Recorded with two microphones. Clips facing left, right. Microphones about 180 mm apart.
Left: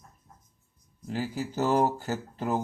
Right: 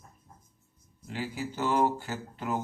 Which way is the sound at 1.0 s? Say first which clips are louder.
Left 3 dB; 40° left (ahead or behind).